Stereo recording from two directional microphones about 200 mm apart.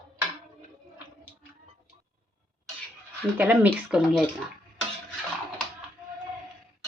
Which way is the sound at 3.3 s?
10° right (ahead or behind).